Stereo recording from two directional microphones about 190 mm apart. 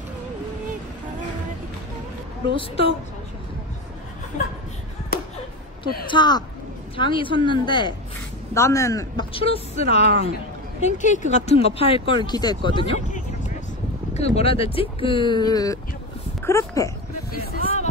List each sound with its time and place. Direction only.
2.5 s speech: 30° left (ahead or behind)
6.0 s speech: 25° left (ahead or behind)
9.3 s a woman's voice: 30° left (ahead or behind)
14.1 s speech: 35° left (ahead or behind); by 16.9 s 15° left (ahead or behind)